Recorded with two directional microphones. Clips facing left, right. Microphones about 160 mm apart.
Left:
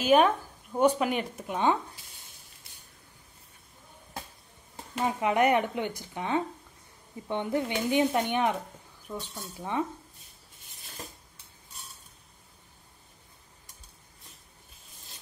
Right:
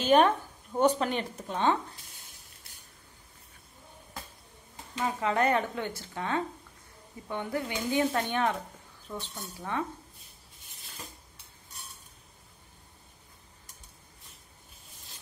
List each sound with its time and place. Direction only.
0.0 s speech: 5° left (ahead or behind)
5.0 s speech: 15° left (ahead or behind)